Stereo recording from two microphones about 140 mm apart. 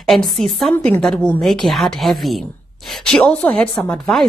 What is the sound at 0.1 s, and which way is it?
A woman's voice, centre (ahead or behind).